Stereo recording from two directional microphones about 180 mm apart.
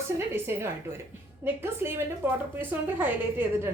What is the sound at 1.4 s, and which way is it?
A woman's voice, 10° right (ahead or behind).